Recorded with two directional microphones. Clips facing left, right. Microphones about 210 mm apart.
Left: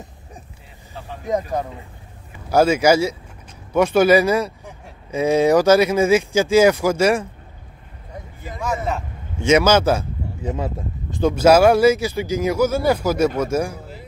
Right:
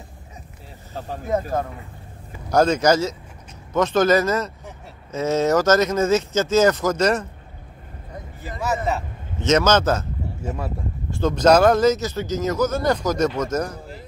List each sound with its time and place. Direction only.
0.9 s speech: 45° right (ahead or behind)
1.5 s speech: 15° left (ahead or behind)
9.4 s speech: 10° left (ahead or behind)